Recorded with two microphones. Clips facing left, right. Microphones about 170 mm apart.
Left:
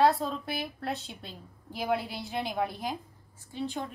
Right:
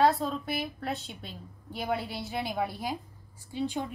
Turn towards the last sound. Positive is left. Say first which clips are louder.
# right 2 dB
turn(degrees=-15)  # may be behind; listen again after turning